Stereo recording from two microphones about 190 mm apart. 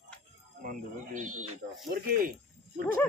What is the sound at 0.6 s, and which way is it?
Speech, 45° right (ahead or behind).